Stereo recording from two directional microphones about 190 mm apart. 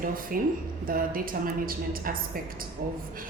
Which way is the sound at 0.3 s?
45° right (ahead or behind).